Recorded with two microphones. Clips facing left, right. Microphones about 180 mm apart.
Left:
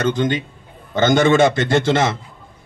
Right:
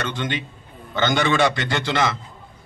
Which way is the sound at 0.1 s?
40° left (ahead or behind).